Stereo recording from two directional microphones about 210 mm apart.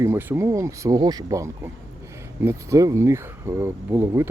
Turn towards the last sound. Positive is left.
turn(degrees=-10)  # may be behind; listen again after turning